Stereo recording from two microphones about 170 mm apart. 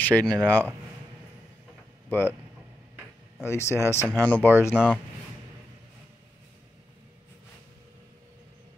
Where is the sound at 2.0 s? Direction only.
10° left (ahead or behind).